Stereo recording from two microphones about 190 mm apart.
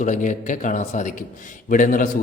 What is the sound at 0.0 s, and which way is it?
A man's voice, 40° left (ahead or behind).